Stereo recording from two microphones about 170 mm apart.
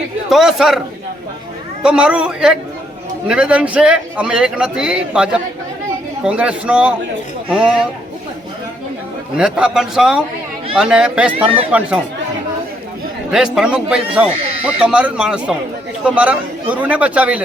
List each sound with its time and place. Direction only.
0.3 s a man's voice: centre (ahead or behind)
1.8 s a man's voice: 5° right (ahead or behind)
9.4 s a man's voice: 5° right (ahead or behind)
13.3 s a man's voice: 5° right (ahead or behind)